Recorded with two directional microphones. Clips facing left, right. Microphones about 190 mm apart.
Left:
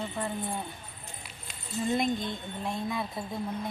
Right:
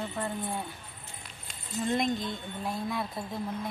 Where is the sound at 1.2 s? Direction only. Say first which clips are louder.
Left 1 dB; 5° left (ahead or behind).